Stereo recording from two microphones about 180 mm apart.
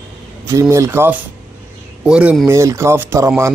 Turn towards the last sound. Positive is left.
turn(degrees=-15)  # may be behind; listen again after turning